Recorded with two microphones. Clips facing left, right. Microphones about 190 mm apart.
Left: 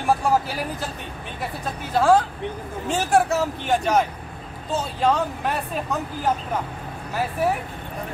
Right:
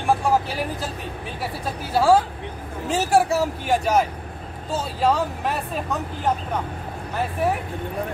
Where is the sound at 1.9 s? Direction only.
5° right (ahead or behind).